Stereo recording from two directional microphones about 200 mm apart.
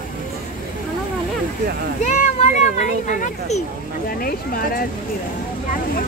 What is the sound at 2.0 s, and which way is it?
Speech, 35° left (ahead or behind).